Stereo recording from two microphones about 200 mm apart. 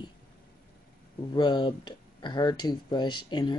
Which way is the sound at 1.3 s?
20° left (ahead or behind).